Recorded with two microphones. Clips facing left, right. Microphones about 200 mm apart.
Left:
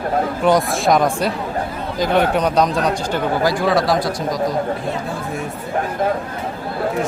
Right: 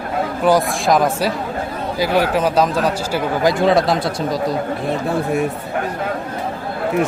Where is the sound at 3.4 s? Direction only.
20° right (ahead or behind).